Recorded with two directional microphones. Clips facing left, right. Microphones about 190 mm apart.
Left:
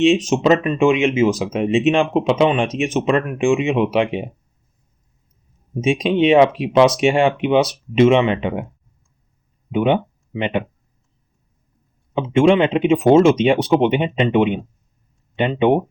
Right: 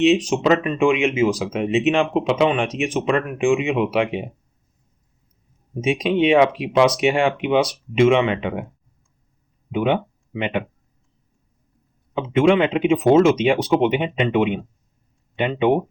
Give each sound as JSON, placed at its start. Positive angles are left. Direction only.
{"t": 0.0, "sound": "speech", "side_deg": 25}
{"t": 5.8, "sound": "speech", "side_deg": 25}
{"t": 9.7, "sound": "speech", "side_deg": 25}
{"t": 12.1, "sound": "speech", "side_deg": 25}